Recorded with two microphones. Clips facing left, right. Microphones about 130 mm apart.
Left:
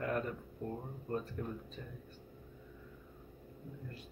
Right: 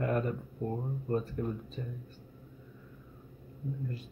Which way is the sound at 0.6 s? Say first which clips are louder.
Right 7 dB; 20° right (ahead or behind).